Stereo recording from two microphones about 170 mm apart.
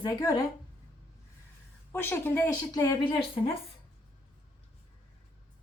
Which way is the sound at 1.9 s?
10° left (ahead or behind).